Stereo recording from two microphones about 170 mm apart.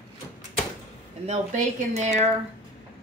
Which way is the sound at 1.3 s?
45° right (ahead or behind).